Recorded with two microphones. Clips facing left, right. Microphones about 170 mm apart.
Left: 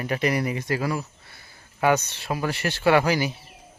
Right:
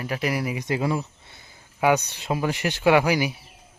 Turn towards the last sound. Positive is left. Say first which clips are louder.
# right 1 dB
turn(degrees=-15)  # may be behind; listen again after turning